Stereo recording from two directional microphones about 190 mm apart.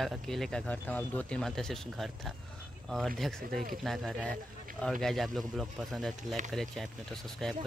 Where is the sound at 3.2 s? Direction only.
Centre (ahead or behind).